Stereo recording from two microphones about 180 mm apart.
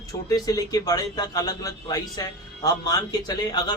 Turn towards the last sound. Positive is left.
turn(degrees=25)  # may be behind; listen again after turning